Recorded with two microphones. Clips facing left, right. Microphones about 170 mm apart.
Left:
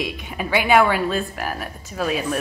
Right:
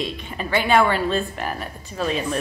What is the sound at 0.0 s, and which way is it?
A woman's voice, 10° left (ahead or behind).